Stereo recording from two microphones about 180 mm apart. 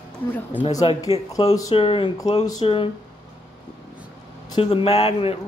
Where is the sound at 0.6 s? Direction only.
25° left (ahead or behind).